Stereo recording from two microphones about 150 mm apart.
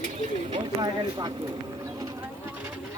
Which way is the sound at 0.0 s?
55° right (ahead or behind).